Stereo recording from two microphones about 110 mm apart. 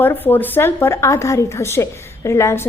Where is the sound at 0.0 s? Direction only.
20° left (ahead or behind).